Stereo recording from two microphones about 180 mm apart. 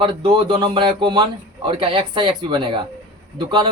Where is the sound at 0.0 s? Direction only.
30° right (ahead or behind).